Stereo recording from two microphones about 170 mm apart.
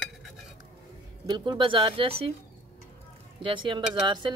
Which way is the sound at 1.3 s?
25° right (ahead or behind).